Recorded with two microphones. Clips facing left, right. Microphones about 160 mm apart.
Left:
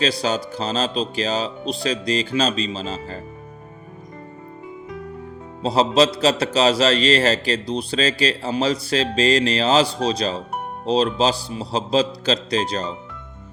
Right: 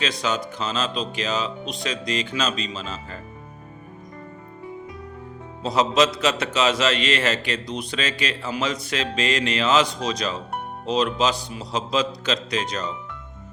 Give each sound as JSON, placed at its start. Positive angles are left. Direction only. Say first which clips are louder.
{"t": 0.0, "sound": "a man's voice", "louder": "left 4 dB", "side_deg": 35}
{"t": 5.6, "sound": "a man's voice", "louder": "left 3 dB", "side_deg": 30}